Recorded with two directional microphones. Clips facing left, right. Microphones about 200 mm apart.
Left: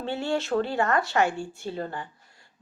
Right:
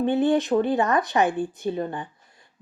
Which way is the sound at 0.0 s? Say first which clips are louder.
Right 8 dB; 20° right (ahead or behind).